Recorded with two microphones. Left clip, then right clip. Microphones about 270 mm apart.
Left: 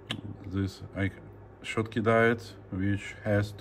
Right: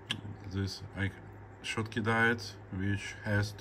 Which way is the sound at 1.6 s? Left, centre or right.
Centre.